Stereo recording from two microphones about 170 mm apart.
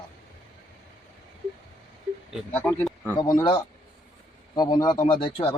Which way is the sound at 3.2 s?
25° left (ahead or behind).